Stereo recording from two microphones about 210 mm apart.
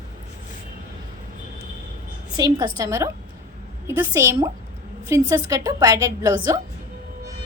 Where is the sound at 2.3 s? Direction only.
20° right (ahead or behind).